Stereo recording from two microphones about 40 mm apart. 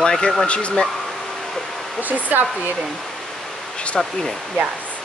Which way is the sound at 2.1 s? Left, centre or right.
Right.